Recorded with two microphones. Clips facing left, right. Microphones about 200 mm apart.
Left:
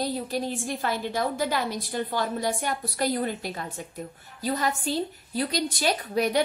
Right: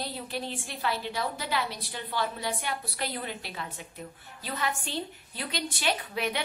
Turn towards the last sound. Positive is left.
turn(degrees=40)  # may be behind; listen again after turning